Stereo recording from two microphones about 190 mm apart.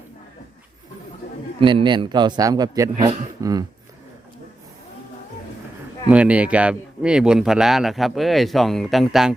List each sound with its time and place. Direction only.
1.5 s a man's voice: 25° right (ahead or behind)
6.1 s speech: 5° right (ahead or behind)